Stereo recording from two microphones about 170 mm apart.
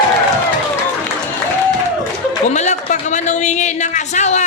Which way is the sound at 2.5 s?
45° left (ahead or behind).